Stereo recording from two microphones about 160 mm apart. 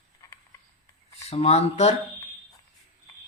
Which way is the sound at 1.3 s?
40° left (ahead or behind).